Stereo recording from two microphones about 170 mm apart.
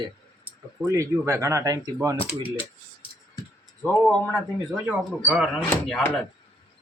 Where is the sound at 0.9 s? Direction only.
20° right (ahead or behind).